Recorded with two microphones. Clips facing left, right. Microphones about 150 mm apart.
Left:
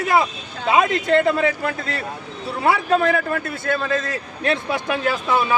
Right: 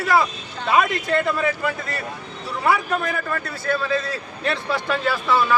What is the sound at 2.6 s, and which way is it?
Speech, 25° left (ahead or behind).